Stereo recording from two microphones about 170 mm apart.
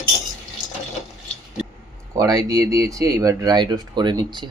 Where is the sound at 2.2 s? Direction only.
20° right (ahead or behind).